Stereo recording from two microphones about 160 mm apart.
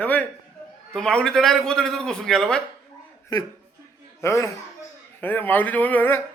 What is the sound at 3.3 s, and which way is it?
A man's voice, 25° left (ahead or behind).